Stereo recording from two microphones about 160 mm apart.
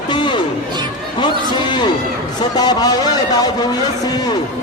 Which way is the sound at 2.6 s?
25° left (ahead or behind).